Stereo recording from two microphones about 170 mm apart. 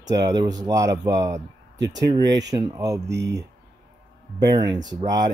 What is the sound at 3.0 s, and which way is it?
Speech, 90° right.